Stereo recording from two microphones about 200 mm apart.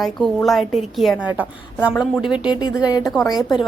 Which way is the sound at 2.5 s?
20° left (ahead or behind).